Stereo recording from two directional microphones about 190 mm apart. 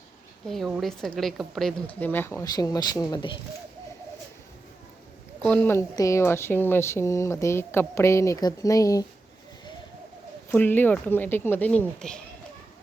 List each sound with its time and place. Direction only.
0.4 s speech: centre (ahead or behind); by 3.3 s 25° left (ahead or behind)
5.5 s speech: 10° left (ahead or behind)
10.5 s speech: 10° left (ahead or behind)